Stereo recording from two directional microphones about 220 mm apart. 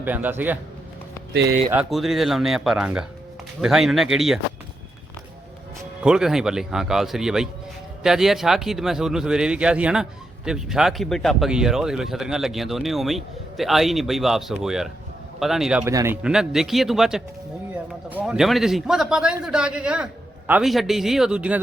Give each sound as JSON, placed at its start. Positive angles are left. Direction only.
{"t": 0.0, "sound": "a man's voice", "side_deg": -10}
{"t": 1.3, "sound": "speech", "side_deg": -50}
{"t": 1.7, "sound": "speech", "side_deg": -5}
{"t": 6.0, "sound": "speech", "side_deg": -5}